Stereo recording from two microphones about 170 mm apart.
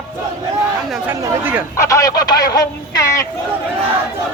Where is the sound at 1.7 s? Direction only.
20° left (ahead or behind).